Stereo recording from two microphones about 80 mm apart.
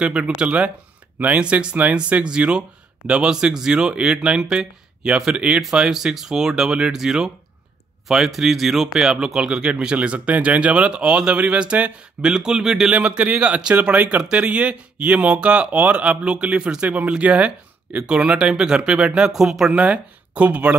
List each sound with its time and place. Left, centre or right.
0.0 s speech: centre
12.9 s speech: centre
19.8 s speech: centre